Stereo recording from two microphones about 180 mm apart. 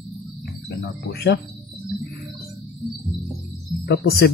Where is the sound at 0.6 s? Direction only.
60° left (ahead or behind).